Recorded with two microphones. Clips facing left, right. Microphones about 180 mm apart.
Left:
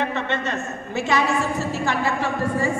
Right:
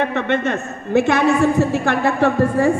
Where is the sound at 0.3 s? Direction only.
60° right (ahead or behind).